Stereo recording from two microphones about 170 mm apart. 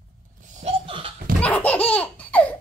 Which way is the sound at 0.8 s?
30° right (ahead or behind).